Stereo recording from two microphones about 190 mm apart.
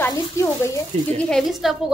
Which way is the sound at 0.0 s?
15° left (ahead or behind).